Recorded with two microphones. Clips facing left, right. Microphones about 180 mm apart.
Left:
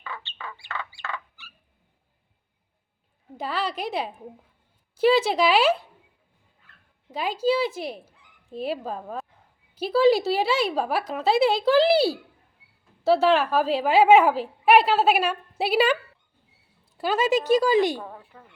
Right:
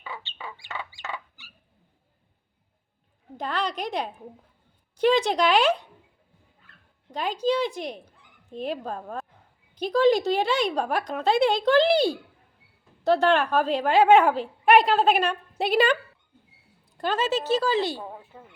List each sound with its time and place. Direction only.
0.0 s fowl: 15° right (ahead or behind)
3.3 s a woman's voice: 5° left (ahead or behind)
7.1 s a woman's voice: 5° left (ahead or behind)
17.0 s speech: 10° left (ahead or behind)
18.0 s speech: 20° right (ahead or behind)